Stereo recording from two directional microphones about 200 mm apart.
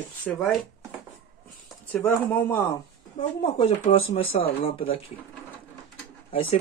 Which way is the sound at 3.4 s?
25° left (ahead or behind).